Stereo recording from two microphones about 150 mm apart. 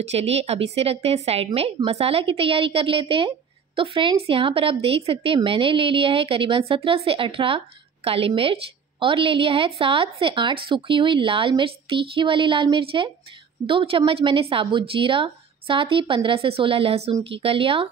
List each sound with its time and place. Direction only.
0.0 s a woman's voice: 45° right (ahead or behind)